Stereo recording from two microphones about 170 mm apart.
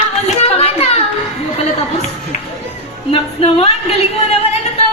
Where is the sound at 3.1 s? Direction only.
35° left (ahead or behind).